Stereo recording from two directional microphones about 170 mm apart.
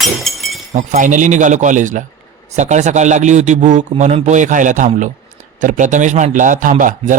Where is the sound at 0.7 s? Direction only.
45° right (ahead or behind).